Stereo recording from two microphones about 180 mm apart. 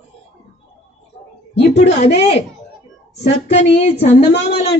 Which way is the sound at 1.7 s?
35° left (ahead or behind).